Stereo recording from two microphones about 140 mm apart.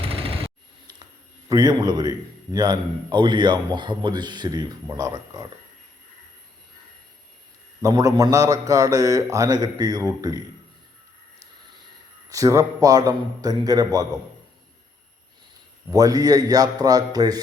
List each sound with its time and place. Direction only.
0.0 s a sound: 45° right (ahead or behind)
1.5 s a man's voice: 25° right (ahead or behind)
7.8 s speech: 25° right (ahead or behind)
12.3 s speech: 25° right (ahead or behind)
15.9 s speech: 25° right (ahead or behind)